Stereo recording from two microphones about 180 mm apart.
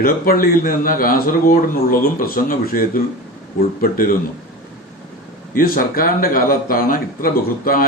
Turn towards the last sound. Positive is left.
turn(degrees=55)  # may be behind; listen again after turning